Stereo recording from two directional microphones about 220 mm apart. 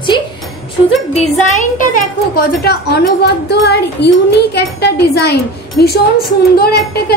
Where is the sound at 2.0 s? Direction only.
45° left (ahead or behind).